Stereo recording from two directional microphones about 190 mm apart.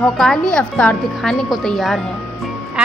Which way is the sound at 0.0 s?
5° left (ahead or behind).